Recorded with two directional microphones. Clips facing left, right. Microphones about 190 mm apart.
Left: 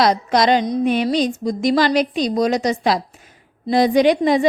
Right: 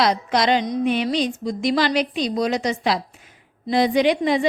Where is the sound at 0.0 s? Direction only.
40° left (ahead or behind).